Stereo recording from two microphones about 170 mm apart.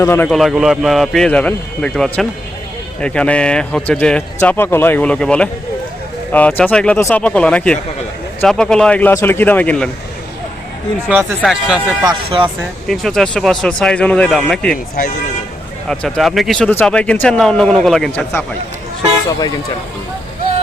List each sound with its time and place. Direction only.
0.0 s speech: 15° left (ahead or behind)
0.3 s speech: centre (ahead or behind)
11.4 s speech: 5° right (ahead or behind)
12.0 s speech: 30° right (ahead or behind)
12.9 s speech: centre (ahead or behind)
15.9 s speech: centre (ahead or behind)